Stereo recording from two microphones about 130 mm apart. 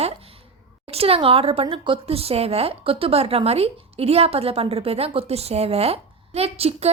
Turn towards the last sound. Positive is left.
turn(degrees=-50)  # may be behind; listen again after turning